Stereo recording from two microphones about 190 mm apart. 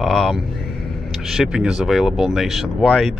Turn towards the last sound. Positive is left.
turn(degrees=0)  # may be behind; listen again after turning